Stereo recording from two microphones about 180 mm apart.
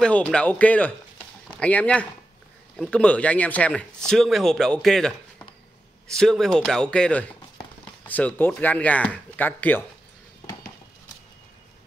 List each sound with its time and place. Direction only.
0.0 s speech: 5° left (ahead or behind)